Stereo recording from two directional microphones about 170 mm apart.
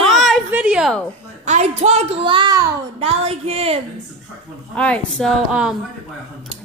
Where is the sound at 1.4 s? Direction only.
40° right (ahead or behind); by 2.7 s 25° right (ahead or behind).